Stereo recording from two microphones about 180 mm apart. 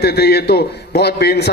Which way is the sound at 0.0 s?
60° left (ahead or behind).